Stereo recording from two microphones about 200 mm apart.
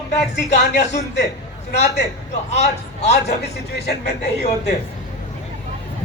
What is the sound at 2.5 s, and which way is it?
Speech, 35° left (ahead or behind).